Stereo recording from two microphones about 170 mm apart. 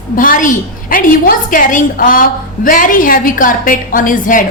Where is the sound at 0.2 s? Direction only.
50° left (ahead or behind).